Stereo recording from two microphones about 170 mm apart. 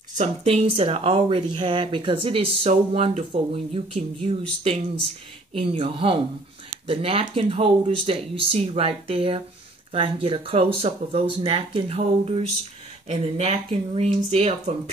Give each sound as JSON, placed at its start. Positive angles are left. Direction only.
{"t": 0.2, "sound": "speech", "side_deg": -40}